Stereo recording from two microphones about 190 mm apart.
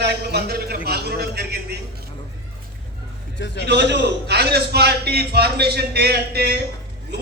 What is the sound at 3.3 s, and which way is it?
Speech, 70° left (ahead or behind).